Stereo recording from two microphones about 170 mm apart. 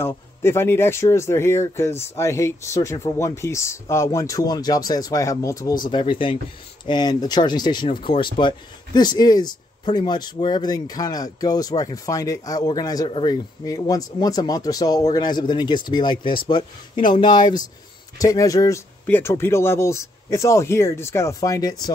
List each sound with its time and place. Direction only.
0.0 s speech: 15° left (ahead or behind)
5.9 s speech: 30° left (ahead or behind)